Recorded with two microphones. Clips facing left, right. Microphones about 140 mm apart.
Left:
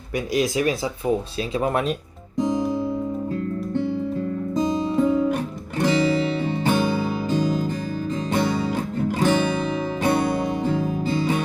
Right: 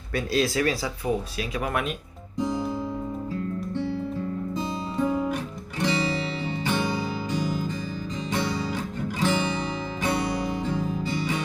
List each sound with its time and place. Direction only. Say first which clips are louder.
0.3 s speech: left 3 dB; 15° left (ahead or behind)
1.5 s speech: left 6 dB; 30° left (ahead or behind)
2.4 s guitar: left 5 dB; 20° left (ahead or behind)
5.8 s music: left 6 dB; 50° left (ahead or behind)